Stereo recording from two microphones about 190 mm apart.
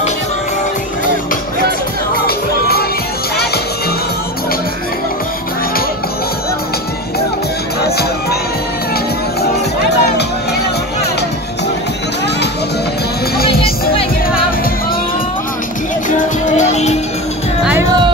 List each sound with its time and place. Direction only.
7.8 s music: 55° left (ahead or behind)
9.4 s music: 60° left (ahead or behind)
16.1 s music: 40° left (ahead or behind)